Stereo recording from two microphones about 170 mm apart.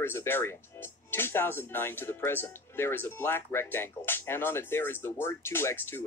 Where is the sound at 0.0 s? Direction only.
15° left (ahead or behind).